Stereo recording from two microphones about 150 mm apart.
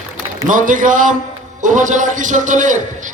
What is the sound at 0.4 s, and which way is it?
A man's voice, 60° right (ahead or behind).